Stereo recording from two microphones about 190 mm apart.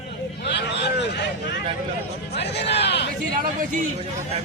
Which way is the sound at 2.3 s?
65° left (ahead or behind).